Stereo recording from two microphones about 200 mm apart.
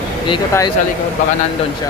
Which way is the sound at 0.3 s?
20° left (ahead or behind).